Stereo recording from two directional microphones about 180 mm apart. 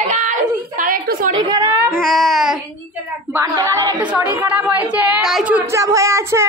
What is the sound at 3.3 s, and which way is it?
Speech, 15° right (ahead or behind).